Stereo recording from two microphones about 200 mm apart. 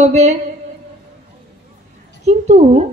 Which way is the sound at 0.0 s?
35° right (ahead or behind).